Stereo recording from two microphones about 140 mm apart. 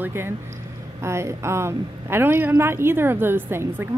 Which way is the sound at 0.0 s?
15° right (ahead or behind).